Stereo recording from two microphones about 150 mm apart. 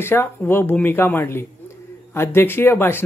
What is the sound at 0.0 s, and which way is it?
Speech, 15° left (ahead or behind).